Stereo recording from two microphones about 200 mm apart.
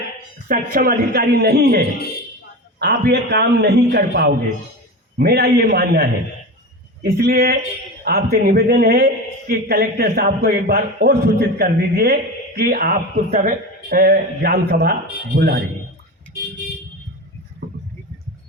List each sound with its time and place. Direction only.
0.4 s a man's voice: 45° right (ahead or behind)